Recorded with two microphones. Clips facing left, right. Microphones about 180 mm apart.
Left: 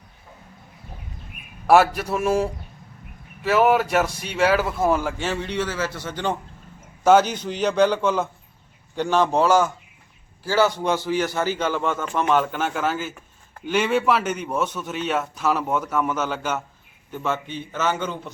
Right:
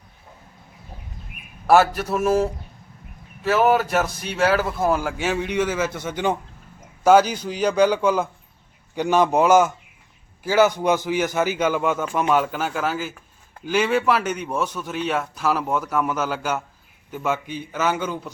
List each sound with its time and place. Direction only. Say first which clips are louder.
1.6 s a man's voice: even; 5° left (ahead or behind)
3.5 s a man's voice: even; centre (ahead or behind)